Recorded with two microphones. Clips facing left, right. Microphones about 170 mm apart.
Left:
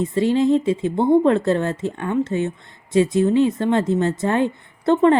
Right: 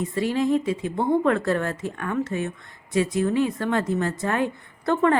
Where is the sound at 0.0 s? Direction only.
25° left (ahead or behind).